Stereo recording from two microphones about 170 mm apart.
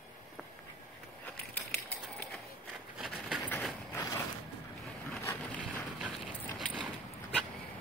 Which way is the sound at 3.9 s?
20° left (ahead or behind).